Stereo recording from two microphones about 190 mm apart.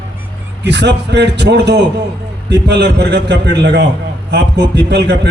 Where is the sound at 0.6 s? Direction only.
65° right (ahead or behind).